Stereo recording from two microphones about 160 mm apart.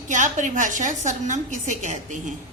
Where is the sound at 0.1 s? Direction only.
50° right (ahead or behind).